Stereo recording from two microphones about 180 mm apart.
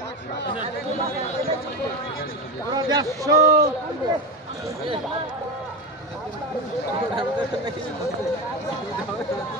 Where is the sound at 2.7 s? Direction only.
20° right (ahead or behind).